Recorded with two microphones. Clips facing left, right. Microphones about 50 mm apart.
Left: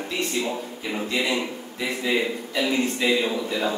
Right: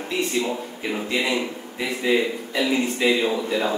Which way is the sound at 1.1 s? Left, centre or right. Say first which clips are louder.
Right 1 dB; centre.